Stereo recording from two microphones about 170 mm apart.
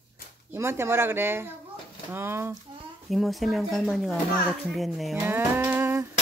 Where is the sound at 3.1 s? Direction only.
Centre (ahead or behind).